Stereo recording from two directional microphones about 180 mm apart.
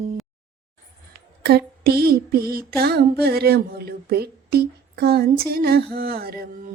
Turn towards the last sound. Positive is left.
turn(degrees=-55)  # may be behind; listen again after turning